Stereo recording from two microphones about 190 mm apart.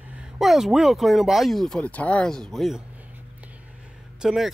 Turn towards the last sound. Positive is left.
turn(degrees=0)  # may be behind; listen again after turning